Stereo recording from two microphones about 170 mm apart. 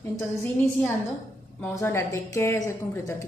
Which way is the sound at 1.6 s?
15° left (ahead or behind).